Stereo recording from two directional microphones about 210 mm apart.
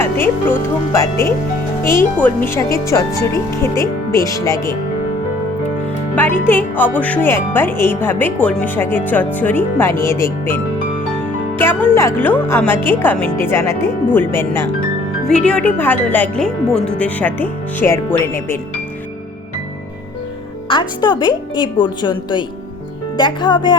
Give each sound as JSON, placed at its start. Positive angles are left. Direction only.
{"t": 0.0, "sound": "speech", "side_deg": 10}
{"t": 1.8, "sound": "speech", "side_deg": 15}
{"t": 6.1, "sound": "speech", "side_deg": 10}
{"t": 20.7, "sound": "a woman's voice", "side_deg": 20}